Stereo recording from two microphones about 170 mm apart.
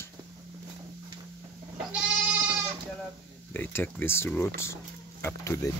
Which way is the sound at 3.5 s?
10° left (ahead or behind).